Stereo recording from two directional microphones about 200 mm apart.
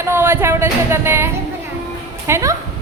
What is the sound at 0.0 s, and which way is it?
Music, 10° right (ahead or behind).